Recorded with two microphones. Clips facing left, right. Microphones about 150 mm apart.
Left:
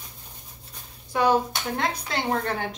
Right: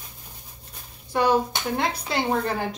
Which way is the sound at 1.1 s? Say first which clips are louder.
Right 1 dB; centre (ahead or behind).